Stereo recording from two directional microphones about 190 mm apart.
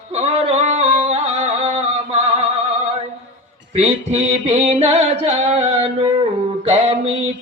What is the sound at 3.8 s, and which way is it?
Music, 35° right (ahead or behind).